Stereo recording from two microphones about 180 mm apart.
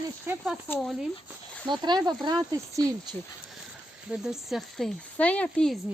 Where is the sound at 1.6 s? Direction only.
25° right (ahead or behind).